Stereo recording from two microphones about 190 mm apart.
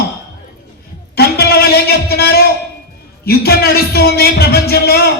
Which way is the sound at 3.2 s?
55° left (ahead or behind).